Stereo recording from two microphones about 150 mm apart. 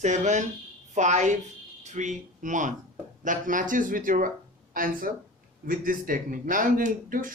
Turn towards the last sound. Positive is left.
turn(degrees=-65)  # may be behind; listen again after turning